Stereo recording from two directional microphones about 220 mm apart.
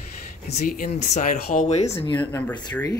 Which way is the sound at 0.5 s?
35° left (ahead or behind).